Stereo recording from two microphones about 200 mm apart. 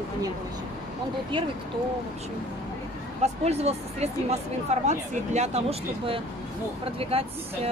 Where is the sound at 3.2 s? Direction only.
30° right (ahead or behind).